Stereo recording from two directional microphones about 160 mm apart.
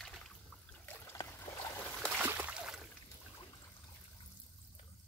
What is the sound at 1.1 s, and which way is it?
Boat, 15° left (ahead or behind).